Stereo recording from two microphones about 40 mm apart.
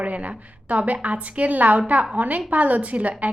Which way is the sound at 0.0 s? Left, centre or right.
Right.